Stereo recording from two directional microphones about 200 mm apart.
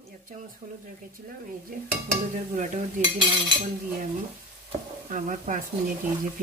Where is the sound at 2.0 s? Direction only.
40° right (ahead or behind).